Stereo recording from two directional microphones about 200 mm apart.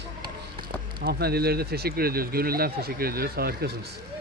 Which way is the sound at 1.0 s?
50° right (ahead or behind).